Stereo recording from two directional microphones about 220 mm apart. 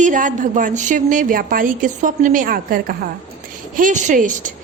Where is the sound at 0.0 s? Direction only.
35° right (ahead or behind).